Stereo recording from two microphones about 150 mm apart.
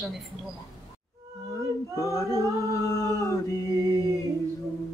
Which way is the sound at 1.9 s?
20° left (ahead or behind).